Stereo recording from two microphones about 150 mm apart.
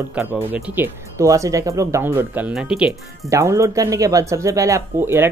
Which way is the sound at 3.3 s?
20° right (ahead or behind).